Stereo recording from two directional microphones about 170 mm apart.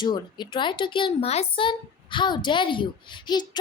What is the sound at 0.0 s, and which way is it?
Speech, 25° left (ahead or behind).